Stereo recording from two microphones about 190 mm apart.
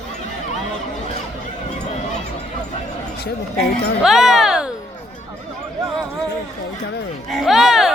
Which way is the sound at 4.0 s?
5° right (ahead or behind).